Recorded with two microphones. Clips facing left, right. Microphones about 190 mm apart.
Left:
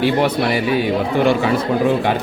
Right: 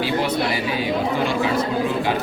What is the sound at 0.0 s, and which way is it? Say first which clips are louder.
Speech: left 5 dB; 55° left (ahead or behind).